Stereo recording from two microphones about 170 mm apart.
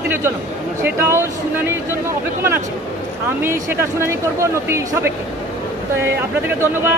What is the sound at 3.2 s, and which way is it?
Speech, 15° right (ahead or behind).